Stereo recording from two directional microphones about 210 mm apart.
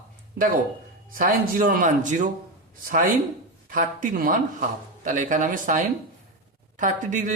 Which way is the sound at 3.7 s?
40° right (ahead or behind).